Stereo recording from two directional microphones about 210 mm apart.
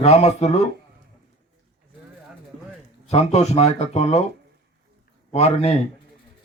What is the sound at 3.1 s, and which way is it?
Speech, 30° left (ahead or behind).